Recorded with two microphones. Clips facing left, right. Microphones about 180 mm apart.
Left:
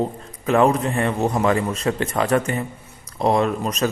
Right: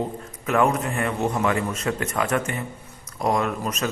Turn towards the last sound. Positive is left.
turn(degrees=35)  # may be behind; listen again after turning